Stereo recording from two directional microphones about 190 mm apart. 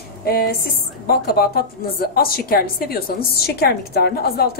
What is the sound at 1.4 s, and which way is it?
A woman's voice, 55° left (ahead or behind).